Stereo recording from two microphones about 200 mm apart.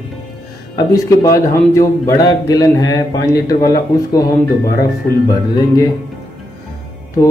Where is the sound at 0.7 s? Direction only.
15° left (ahead or behind).